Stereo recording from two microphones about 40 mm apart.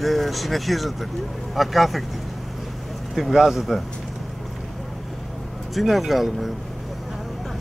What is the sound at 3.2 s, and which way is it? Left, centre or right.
Speech, centre.